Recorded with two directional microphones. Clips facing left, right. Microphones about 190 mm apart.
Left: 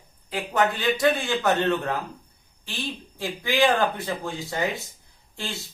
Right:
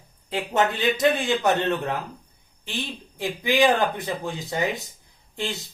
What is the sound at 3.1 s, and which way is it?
A man's voice, 20° right (ahead or behind).